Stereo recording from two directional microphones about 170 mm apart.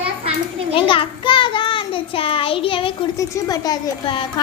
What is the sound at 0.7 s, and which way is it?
A child's voice, 30° left (ahead or behind).